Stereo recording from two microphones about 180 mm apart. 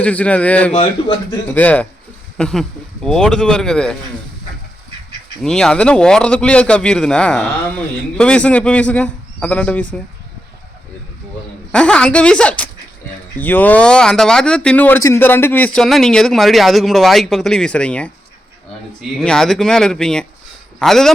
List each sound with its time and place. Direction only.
0.0 s a man's voice: 5° left (ahead or behind)
0.7 s a man's voice: 30° left (ahead or behind)
1.5 s a man's voice: 10° left (ahead or behind)
5.4 s a man's voice: 5° left (ahead or behind)
11.7 s speech: 5° left (ahead or behind)
19.1 s speech: 5° left (ahead or behind)